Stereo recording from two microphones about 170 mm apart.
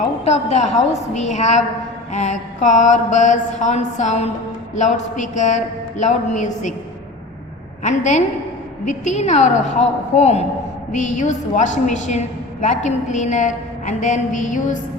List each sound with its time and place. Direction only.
0.3 s a woman's voice: 40° left (ahead or behind)
2.1 s mantra: 45° left (ahead or behind)
7.9 s mantra: 45° left (ahead or behind)